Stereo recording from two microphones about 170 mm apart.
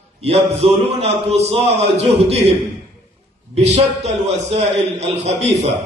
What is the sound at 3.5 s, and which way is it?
A man's voice, 40° right (ahead or behind).